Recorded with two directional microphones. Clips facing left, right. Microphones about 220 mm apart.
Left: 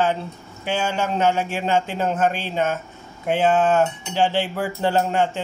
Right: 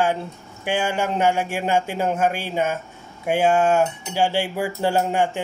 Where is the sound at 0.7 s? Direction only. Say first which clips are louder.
Right 1 dB; 15° right (ahead or behind).